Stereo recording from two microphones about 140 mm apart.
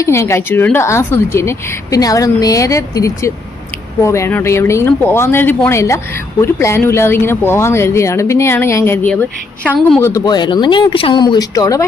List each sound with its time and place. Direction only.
0.0 s a woman's voice: 20° left (ahead or behind)
10.0 s speech: 20° left (ahead or behind)